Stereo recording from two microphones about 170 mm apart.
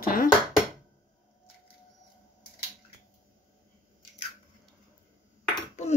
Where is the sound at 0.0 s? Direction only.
55° left (ahead or behind).